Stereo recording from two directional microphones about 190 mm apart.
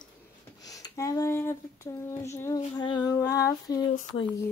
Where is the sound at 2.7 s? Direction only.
20° left (ahead or behind).